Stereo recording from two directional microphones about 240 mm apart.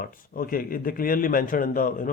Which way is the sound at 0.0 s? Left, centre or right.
Left.